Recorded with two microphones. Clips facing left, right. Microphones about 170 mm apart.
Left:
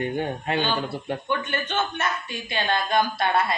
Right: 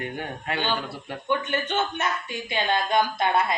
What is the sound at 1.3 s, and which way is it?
A woman's voice, 15° right (ahead or behind).